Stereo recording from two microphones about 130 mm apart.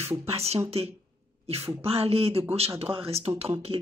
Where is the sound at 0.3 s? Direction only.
50° right (ahead or behind).